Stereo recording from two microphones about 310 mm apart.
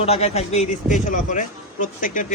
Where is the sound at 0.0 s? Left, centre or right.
Centre.